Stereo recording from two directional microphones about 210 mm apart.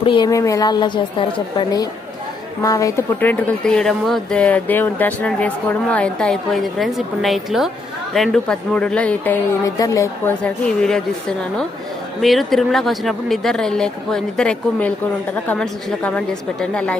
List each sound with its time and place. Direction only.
0.0 s a woman's voice: 20° left (ahead or behind); by 17.0 s 5° left (ahead or behind)